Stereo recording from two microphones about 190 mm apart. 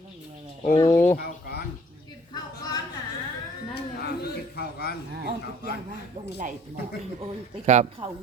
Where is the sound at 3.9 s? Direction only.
55° left (ahead or behind).